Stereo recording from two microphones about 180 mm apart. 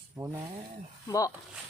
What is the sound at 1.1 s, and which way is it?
Speech, 20° left (ahead or behind).